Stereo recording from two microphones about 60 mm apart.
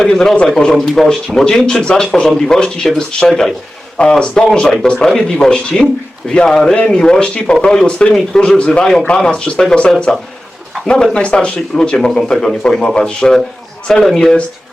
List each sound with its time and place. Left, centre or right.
0.0 s speech: centre